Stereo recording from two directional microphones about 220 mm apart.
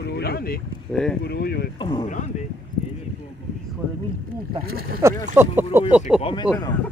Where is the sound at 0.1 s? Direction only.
45° left (ahead or behind).